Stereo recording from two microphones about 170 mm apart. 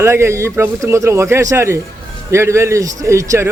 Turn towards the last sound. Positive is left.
turn(degrees=-15)  # may be behind; listen again after turning